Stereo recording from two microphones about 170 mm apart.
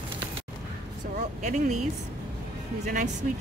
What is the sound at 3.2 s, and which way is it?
Speech, 50° right (ahead or behind).